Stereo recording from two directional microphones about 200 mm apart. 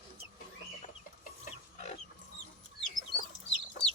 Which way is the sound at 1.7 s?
35° left (ahead or behind).